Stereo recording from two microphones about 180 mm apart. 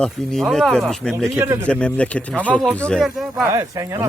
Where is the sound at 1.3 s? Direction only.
15° right (ahead or behind).